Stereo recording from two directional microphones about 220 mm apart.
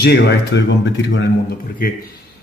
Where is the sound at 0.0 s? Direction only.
50° left (ahead or behind).